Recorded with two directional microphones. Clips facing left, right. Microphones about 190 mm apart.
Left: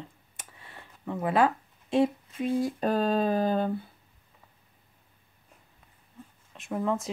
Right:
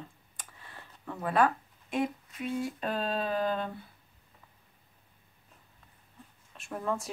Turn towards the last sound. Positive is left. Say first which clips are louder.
# left 5 dB
turn(degrees=20)  # may be behind; listen again after turning